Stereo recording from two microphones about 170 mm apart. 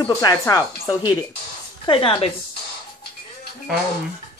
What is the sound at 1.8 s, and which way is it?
Speech, 30° left (ahead or behind).